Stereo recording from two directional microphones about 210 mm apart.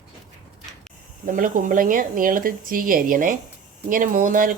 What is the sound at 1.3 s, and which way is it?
Speech, 40° right (ahead or behind).